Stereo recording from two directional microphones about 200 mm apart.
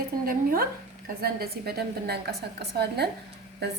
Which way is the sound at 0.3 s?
45° right (ahead or behind).